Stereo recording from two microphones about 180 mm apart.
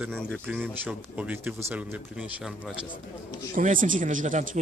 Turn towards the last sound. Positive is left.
turn(degrees=-45)  # may be behind; listen again after turning